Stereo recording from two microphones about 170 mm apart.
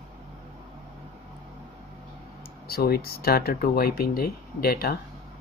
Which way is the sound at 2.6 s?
65° left (ahead or behind).